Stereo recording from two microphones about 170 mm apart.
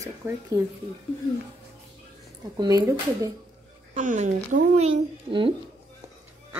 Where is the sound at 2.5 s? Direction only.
20° right (ahead or behind).